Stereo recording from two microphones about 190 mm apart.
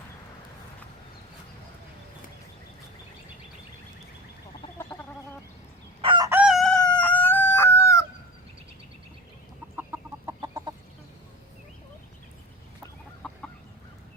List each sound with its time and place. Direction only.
4.9 s chicken: 15° left (ahead or behind)
6.0 s chicken: 25° right (ahead or behind)
6.3 s crowing: 5° right (ahead or behind); by 8.0 s 15° left (ahead or behind)
9.7 s chicken: 15° right (ahead or behind)
13.2 s chicken: centre (ahead or behind)